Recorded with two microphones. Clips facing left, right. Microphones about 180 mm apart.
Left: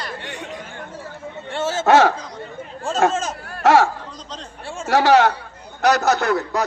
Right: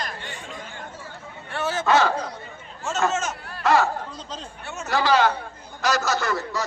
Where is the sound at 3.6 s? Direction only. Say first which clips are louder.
Left 5 dB; 80° left.